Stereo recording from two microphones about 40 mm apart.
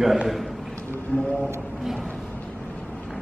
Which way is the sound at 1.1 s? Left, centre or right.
Left.